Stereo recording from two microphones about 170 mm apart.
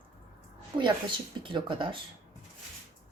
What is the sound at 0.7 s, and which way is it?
Speech, 40° right (ahead or behind).